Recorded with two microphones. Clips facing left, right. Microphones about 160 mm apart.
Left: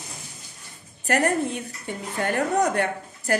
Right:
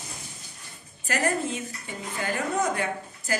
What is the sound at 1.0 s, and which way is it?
A woman's voice, 65° left (ahead or behind).